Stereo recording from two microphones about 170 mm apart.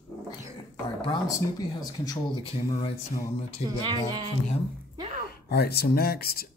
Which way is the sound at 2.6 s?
35° left (ahead or behind).